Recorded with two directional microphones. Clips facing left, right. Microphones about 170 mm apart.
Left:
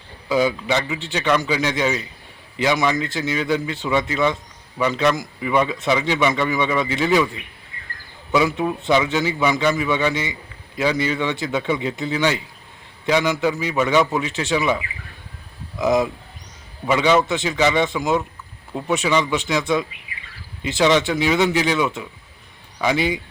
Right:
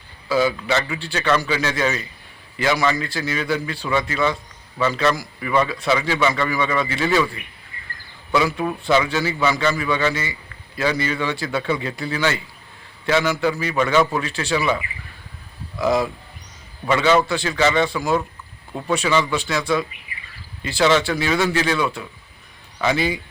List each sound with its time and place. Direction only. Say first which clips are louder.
0.3 s a man's voice: even; 15° left (ahead or behind)